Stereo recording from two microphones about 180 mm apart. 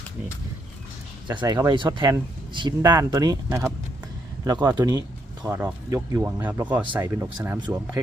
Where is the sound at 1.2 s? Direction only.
25° right (ahead or behind).